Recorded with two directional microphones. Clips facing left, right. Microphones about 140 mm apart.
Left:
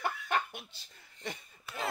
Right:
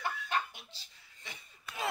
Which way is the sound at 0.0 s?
55° left (ahead or behind).